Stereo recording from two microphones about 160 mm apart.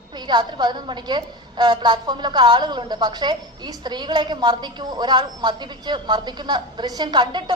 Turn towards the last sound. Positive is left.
turn(degrees=-30)  # may be behind; listen again after turning